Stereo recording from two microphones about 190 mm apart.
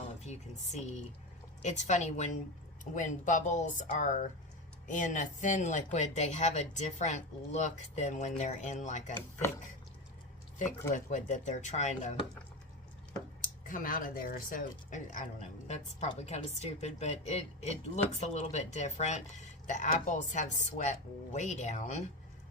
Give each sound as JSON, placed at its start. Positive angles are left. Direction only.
{"t": 1.6, "sound": "speech", "side_deg": 40}
{"t": 10.6, "sound": "speech", "side_deg": 40}
{"t": 13.4, "sound": "speech", "side_deg": 45}